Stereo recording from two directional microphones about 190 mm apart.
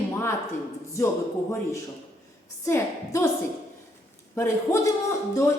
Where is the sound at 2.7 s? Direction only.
15° left (ahead or behind).